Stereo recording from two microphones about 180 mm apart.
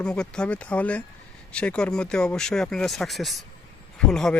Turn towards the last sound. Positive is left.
turn(degrees=5)  # may be behind; listen again after turning